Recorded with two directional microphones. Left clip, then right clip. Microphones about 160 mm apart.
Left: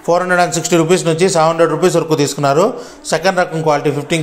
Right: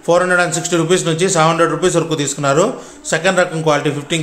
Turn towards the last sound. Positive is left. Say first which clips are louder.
# left 1 dB
turn(degrees=15)  # may be behind; listen again after turning